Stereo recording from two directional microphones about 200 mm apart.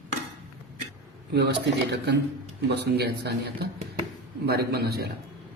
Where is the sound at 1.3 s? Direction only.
55° right (ahead or behind).